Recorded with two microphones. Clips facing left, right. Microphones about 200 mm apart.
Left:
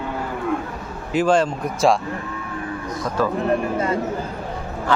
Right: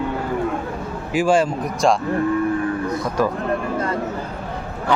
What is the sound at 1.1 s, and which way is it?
Speech, 10° right (ahead or behind).